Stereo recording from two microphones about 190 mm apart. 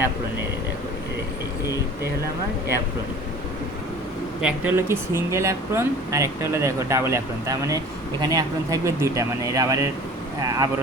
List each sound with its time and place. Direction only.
4.4 s speech: 10° right (ahead or behind)